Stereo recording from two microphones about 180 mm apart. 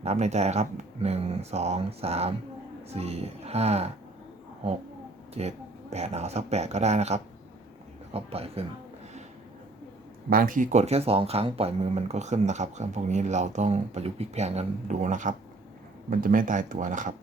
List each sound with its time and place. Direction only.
0.0 s speech: 40° right (ahead or behind)
5.3 s speech: 35° right (ahead or behind)
10.2 s speech: 55° right (ahead or behind)